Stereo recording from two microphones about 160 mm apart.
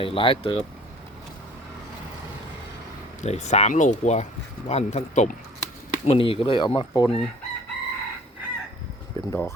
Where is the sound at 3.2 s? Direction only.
45° left (ahead or behind).